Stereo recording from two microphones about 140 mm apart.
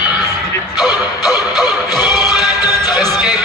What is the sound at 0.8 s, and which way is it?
Music, 25° left (ahead or behind).